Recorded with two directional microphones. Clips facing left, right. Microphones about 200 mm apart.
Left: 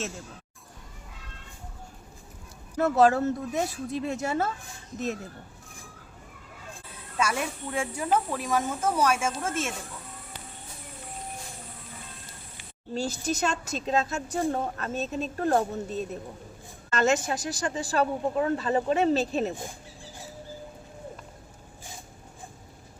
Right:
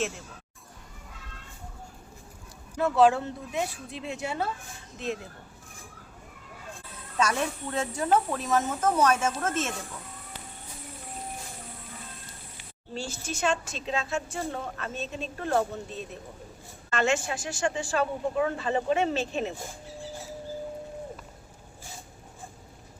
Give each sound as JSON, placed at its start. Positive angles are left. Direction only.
{"t": 2.8, "sound": "speech", "side_deg": 40}
{"t": 7.2, "sound": "speech", "side_deg": 10}
{"t": 12.9, "sound": "speech", "side_deg": 40}